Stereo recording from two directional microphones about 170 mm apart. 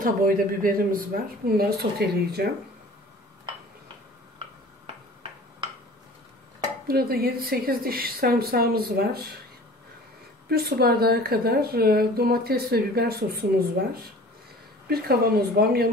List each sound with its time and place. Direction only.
0.0 s a woman's voice: 55° right (ahead or behind)
6.9 s a woman's voice: 65° right (ahead or behind)
10.5 s a woman's voice: 65° right (ahead or behind)
14.9 s speech: 65° right (ahead or behind)